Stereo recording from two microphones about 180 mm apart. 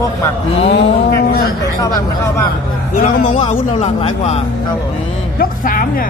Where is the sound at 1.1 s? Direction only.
55° left (ahead or behind).